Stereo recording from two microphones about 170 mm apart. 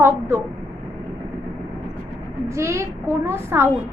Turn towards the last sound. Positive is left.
turn(degrees=-15)  # may be behind; listen again after turning